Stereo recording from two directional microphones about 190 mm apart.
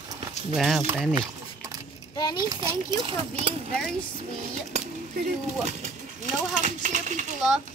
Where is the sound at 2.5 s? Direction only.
25° right (ahead or behind).